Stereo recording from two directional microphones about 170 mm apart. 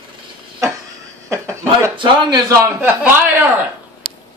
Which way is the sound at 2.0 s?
25° right (ahead or behind).